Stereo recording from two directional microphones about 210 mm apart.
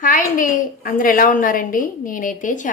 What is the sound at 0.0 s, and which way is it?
A woman's voice, 40° left (ahead or behind).